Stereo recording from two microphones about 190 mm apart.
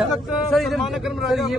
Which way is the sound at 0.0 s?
Centre (ahead or behind).